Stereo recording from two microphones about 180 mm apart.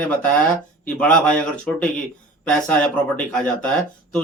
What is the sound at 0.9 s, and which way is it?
Speech, 5° left (ahead or behind).